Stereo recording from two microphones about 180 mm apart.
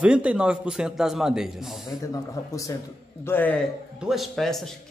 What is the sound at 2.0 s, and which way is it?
A man's voice, 20° left (ahead or behind).